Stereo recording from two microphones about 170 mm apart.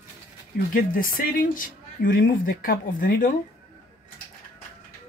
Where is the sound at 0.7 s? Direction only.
55° left (ahead or behind).